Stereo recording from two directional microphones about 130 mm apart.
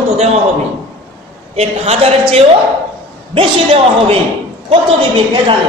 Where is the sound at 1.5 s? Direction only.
55° right (ahead or behind).